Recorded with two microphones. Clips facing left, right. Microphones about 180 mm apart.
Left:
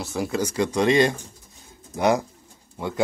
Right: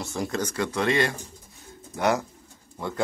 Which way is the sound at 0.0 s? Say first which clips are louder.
Left 3 dB; 5° left (ahead or behind).